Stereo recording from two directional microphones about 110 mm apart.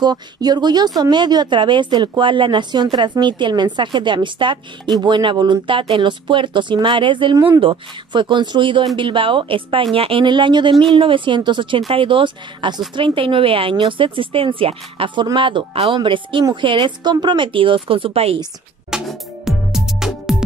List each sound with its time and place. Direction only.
0.0 s speech: 40° right (ahead or behind); by 18.4 s 60° right (ahead or behind)
18.9 s music: 5° right (ahead or behind)